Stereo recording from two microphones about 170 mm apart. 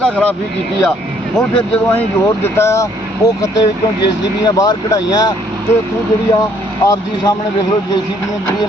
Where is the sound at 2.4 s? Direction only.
15° left (ahead or behind).